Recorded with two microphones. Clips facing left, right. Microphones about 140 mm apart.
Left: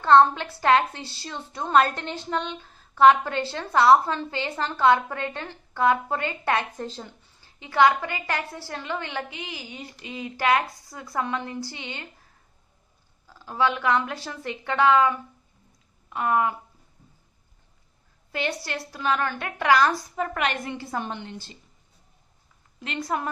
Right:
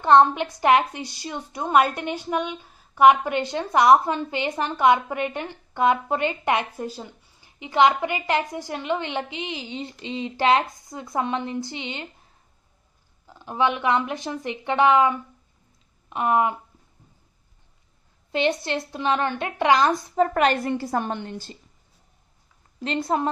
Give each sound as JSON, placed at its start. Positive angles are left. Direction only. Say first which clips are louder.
{"t": 0.0, "sound": "a woman's voice", "louder": "right 1 dB", "side_deg": -15}
{"t": 13.3, "sound": "a woman's voice", "louder": "right 1 dB", "side_deg": -20}
{"t": 18.3, "sound": "a woman's voice", "louder": "right 6 dB", "side_deg": -20}
{"t": 20.2, "sound": "a woman's voice", "louder": "right 11 dB", "side_deg": -35}
{"t": 22.8, "sound": "a woman's voice", "louder": "right 5 dB", "side_deg": -30}